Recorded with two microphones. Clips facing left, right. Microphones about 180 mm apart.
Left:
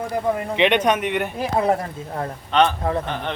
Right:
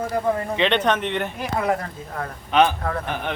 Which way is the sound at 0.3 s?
15° left (ahead or behind).